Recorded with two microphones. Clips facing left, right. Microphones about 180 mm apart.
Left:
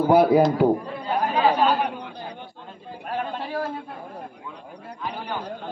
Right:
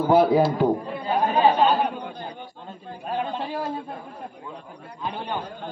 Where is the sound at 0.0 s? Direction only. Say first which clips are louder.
Left 1 dB; 10° left (ahead or behind).